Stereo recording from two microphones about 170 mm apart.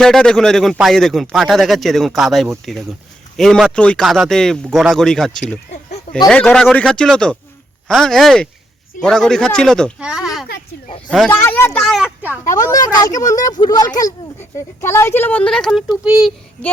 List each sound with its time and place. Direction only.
0.0 s speech: 5° left (ahead or behind)
5.7 s a sound: 45° left (ahead or behind)
6.2 s speech: 5° left (ahead or behind)
11.3 s speech: 10° left (ahead or behind); by 12.4 s 5° right (ahead or behind)
12.5 s speech: 20° left (ahead or behind); by 16.3 s centre (ahead or behind)